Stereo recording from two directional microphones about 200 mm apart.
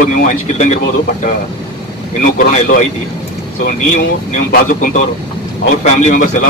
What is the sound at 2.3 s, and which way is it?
Speech, 35° left (ahead or behind).